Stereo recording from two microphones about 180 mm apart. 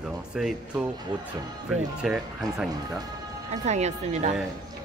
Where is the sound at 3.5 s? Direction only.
40° right (ahead or behind).